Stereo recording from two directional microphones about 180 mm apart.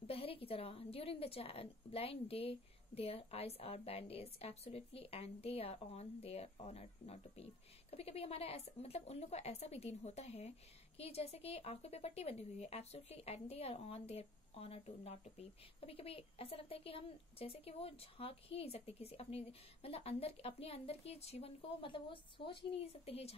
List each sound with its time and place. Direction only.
0.0 s speech: 30° left (ahead or behind)